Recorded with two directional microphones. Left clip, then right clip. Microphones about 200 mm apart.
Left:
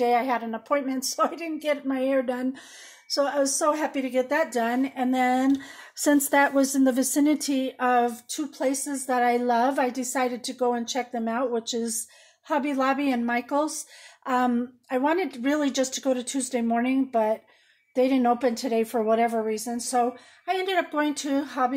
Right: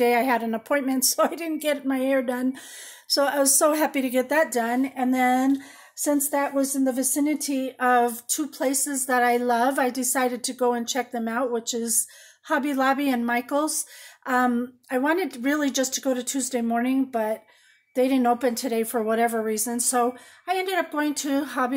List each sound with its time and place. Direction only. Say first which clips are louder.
0.0 s speech: right 2 dB; 30° right (ahead or behind); by 2.4 s 10° right (ahead or behind)
3.2 s a woman's voice: right 3 dB; 35° right (ahead or behind)
4.6 s a woman's voice: right 1 dB; centre (ahead or behind)
5.9 s a woman's voice: left 3 dB; 35° left (ahead or behind)
7.8 s a woman's voice: right 3 dB; 5° left (ahead or behind)
20.4 s a woman's voice: even; 10° left (ahead or behind)
21.1 s a woman's voice: right 1 dB; centre (ahead or behind)
21.4 s speech: left 1 dB; 15° right (ahead or behind)